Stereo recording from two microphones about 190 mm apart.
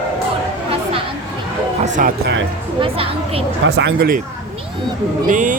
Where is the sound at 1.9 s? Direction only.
45° right (ahead or behind).